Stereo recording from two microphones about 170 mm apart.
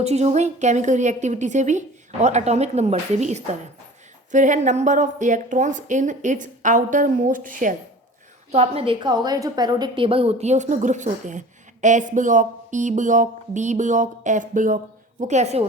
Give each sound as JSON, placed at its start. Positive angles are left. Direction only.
{"t": 0.0, "sound": "a woman's voice", "side_deg": -40}
{"t": 8.5, "sound": "a woman's voice", "side_deg": -35}